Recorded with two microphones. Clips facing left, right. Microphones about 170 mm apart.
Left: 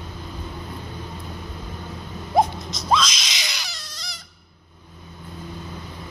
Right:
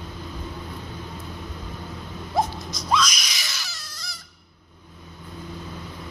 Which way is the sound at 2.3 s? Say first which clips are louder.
Left 5 dB; 20° left (ahead or behind).